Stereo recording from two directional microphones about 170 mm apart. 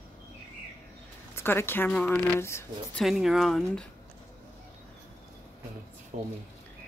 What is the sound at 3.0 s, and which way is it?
Speech, centre (ahead or behind).